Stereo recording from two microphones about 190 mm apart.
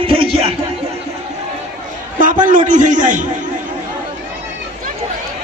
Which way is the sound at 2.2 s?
45° right (ahead or behind).